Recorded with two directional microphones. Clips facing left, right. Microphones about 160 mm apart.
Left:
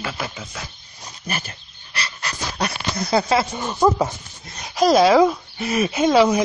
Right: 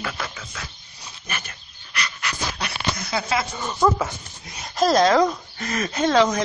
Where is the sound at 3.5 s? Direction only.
15° left (ahead or behind).